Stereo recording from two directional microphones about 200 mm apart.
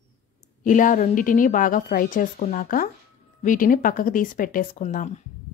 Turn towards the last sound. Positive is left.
turn(degrees=40)  # may be behind; listen again after turning